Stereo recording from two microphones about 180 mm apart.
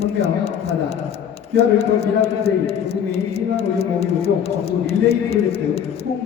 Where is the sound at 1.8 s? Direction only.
35° left (ahead or behind).